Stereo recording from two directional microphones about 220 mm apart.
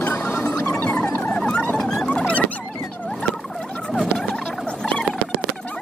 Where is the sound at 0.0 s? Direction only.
5° left (ahead or behind).